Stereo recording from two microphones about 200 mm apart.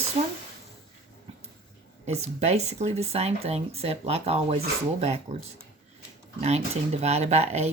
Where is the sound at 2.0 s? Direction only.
30° right (ahead or behind).